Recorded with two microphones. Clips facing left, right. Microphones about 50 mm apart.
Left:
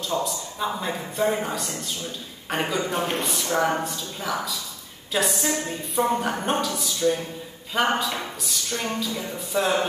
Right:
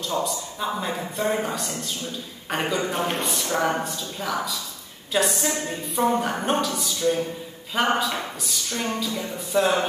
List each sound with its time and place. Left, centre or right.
0.1 s speech: centre